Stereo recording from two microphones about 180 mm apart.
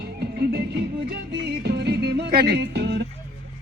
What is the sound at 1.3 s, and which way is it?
Music, 70° right (ahead or behind).